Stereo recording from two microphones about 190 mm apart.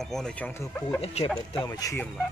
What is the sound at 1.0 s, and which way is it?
Speech, 35° left (ahead or behind).